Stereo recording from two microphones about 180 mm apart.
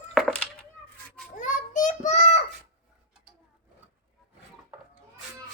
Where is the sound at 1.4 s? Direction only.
45° left (ahead or behind).